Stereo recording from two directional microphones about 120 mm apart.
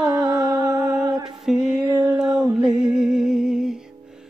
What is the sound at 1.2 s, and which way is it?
Music, 5° right (ahead or behind).